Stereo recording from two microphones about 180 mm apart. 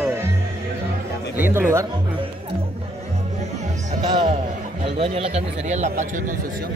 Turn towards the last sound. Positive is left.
turn(degrees=-40)  # may be behind; listen again after turning